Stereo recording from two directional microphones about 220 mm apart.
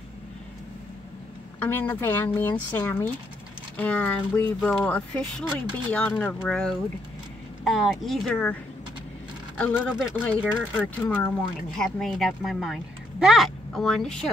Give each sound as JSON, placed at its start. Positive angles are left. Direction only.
{"t": 1.6, "sound": "speech", "side_deg": 10}
{"t": 9.6, "sound": "speech", "side_deg": 0}